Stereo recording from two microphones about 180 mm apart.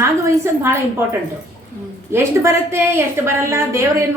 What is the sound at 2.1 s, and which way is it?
A woman's voice, 15° right (ahead or behind).